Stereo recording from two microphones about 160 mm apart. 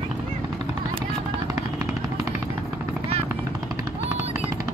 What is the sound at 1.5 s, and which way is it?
Vehicle, 20° right (ahead or behind).